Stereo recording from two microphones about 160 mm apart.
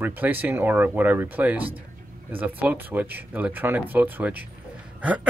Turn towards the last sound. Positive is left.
turn(degrees=-10)  # may be behind; listen again after turning